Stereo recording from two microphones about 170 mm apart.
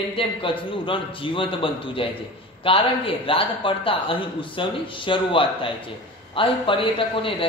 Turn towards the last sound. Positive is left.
turn(degrees=30)  # may be behind; listen again after turning